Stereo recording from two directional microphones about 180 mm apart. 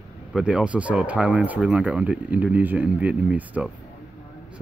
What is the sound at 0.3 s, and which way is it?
Speech, 5° right (ahead or behind).